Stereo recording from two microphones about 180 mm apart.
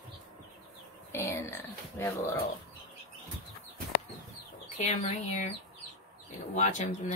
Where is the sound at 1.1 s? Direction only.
15° left (ahead or behind).